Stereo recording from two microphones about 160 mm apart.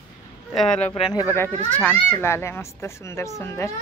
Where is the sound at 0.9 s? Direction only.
30° left (ahead or behind).